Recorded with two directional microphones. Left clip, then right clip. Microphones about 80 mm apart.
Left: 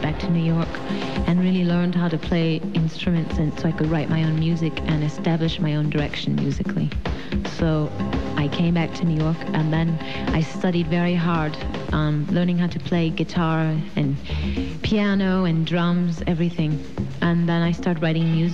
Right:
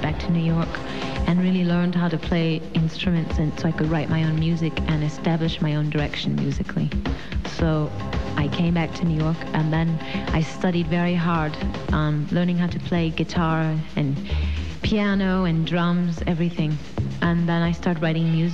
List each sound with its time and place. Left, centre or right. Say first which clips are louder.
0.0 s speech: left 1 dB; left
1.2 s speech: even; left
1.7 s speech: even; left
2.2 s speech: left 1 dB; left
8.4 s speech: even; left
9.3 s speech: left 1 dB; left
10.4 s speech: left 1 dB; left